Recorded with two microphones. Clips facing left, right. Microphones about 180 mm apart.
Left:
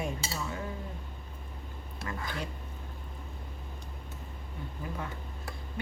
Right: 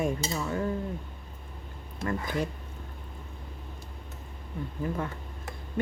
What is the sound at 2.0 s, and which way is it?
Speech, 45° right (ahead or behind).